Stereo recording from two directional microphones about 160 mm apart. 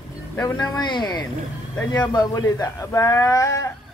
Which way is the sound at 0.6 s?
25° left (ahead or behind).